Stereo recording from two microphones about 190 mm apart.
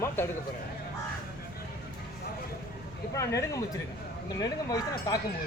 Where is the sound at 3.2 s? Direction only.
15° left (ahead or behind).